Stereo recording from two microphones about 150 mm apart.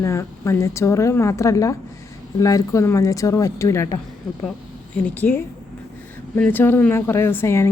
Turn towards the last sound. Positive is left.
turn(degrees=15)  # may be behind; listen again after turning